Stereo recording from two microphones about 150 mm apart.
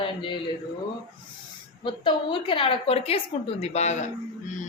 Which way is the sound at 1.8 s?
30° left (ahead or behind).